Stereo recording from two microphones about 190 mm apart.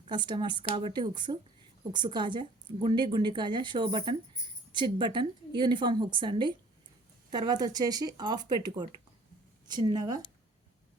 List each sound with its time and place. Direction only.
0.1 s a woman's voice: 25° right (ahead or behind)